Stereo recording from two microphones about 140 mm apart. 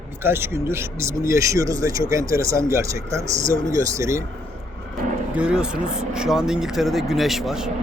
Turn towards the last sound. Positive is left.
turn(degrees=-5)  # may be behind; listen again after turning